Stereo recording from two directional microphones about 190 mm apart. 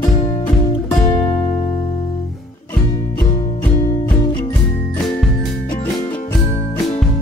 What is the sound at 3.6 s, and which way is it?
Music, 15° left (ahead or behind).